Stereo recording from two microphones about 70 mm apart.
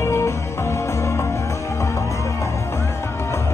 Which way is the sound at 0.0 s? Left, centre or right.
Left.